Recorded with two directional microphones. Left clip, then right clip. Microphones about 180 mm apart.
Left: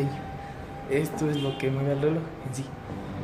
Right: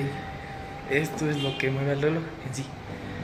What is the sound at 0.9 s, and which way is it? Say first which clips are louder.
Speech: even; 5° left (ahead or behind).